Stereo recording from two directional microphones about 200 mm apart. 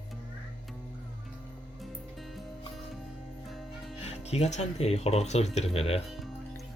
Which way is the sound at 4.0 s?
35° left (ahead or behind).